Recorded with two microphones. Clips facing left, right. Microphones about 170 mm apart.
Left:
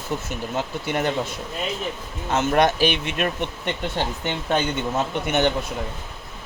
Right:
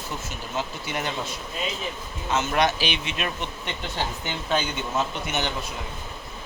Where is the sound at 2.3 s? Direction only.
55° left (ahead or behind).